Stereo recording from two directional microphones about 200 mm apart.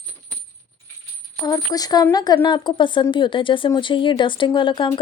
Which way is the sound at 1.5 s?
20° left (ahead or behind).